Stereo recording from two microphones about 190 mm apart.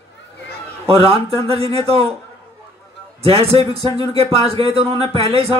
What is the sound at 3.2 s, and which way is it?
Speech, 30° right (ahead or behind).